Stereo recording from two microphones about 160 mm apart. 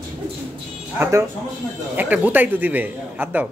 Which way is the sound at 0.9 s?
15° right (ahead or behind).